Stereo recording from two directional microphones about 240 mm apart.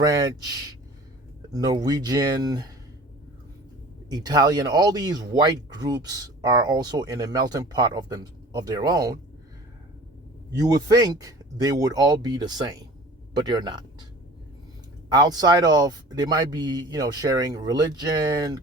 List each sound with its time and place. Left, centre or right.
0.0 s speech: centre
1.5 s speech: centre
4.1 s speech: centre
10.6 s speech: centre
15.1 s speech: centre